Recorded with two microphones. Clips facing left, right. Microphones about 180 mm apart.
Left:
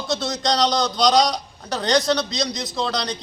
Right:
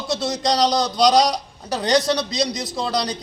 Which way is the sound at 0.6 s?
35° right (ahead or behind).